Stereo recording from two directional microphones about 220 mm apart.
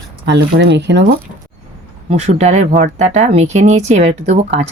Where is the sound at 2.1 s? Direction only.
30° right (ahead or behind).